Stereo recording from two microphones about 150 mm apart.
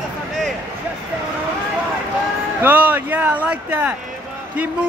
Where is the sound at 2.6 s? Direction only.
10° right (ahead or behind).